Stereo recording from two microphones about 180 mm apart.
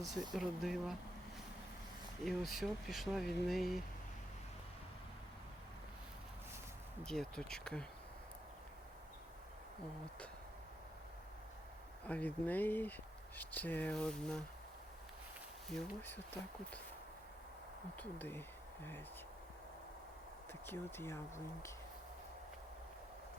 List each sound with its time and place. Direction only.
0.3 s speech: centre (ahead or behind)
2.2 s speech: centre (ahead or behind)
7.0 s speech: 5° left (ahead or behind)
12.0 s speech: 10° left (ahead or behind)
15.7 s speech: 5° left (ahead or behind)
17.9 s speech: 10° left (ahead or behind)
20.5 s speech: 10° left (ahead or behind)